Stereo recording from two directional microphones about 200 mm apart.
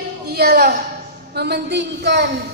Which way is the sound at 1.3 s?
55° right (ahead or behind).